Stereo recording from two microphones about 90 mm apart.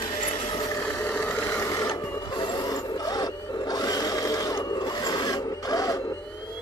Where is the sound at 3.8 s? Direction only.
45° left (ahead or behind).